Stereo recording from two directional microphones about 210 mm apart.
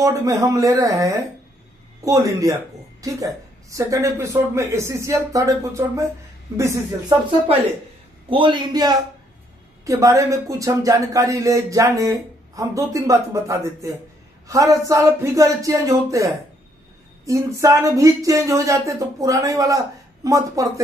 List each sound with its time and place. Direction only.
0.0 s a man's voice: 15° right (ahead or behind)